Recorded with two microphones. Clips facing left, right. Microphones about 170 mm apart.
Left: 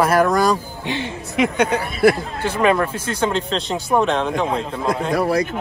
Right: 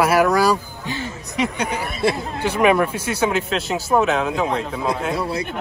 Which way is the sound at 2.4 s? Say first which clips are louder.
Right 1 dB; 10° right (ahead or behind).